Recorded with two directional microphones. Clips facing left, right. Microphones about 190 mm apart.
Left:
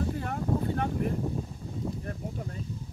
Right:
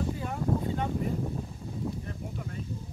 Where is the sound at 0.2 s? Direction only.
55° left (ahead or behind).